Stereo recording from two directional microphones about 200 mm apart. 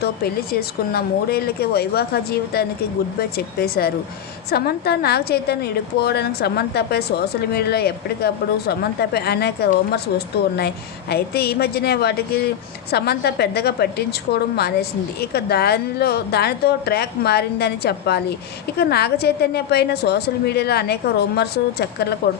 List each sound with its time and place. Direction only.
0.5 s a woman's voice: 50° left (ahead or behind)